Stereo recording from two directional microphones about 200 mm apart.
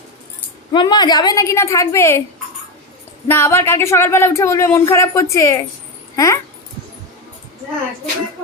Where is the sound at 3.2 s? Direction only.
10° left (ahead or behind).